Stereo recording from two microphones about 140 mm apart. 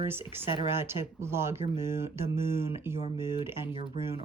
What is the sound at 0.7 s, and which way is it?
Speech, 15° right (ahead or behind).